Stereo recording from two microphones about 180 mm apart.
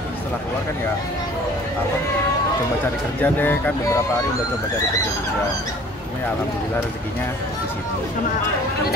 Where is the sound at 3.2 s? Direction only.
10° left (ahead or behind).